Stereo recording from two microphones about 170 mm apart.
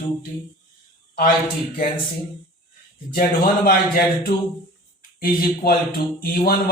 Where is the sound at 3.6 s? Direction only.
60° left (ahead or behind).